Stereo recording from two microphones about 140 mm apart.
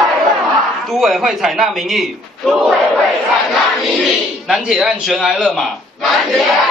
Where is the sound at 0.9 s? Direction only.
Centre (ahead or behind).